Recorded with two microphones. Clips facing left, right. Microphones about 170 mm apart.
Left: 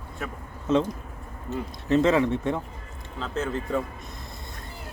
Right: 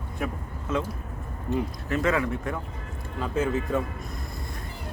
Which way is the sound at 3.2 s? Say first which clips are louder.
Right 3 dB; 10° right (ahead or behind).